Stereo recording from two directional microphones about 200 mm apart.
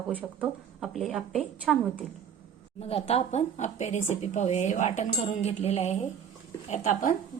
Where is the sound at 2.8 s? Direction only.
30° left (ahead or behind).